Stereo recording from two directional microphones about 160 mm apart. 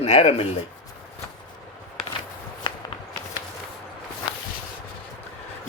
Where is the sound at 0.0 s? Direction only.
40° left (ahead or behind).